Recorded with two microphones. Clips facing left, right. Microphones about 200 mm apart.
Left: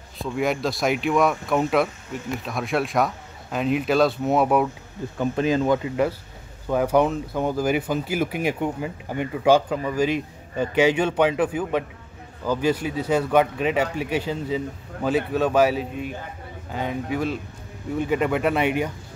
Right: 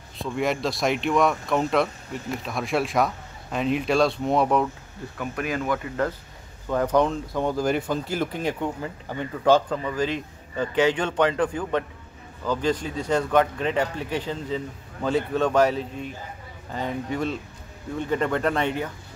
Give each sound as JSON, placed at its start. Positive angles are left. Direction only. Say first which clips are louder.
{"t": 0.2, "sound": "speech", "louder": "left 1 dB", "side_deg": 0}
{"t": 5.1, "sound": "speech", "louder": "left 7 dB", "side_deg": 25}
{"t": 6.7, "sound": "speech", "louder": "left 2 dB", "side_deg": 10}